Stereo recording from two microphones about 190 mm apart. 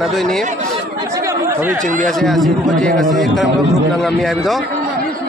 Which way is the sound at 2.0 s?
Centre (ahead or behind).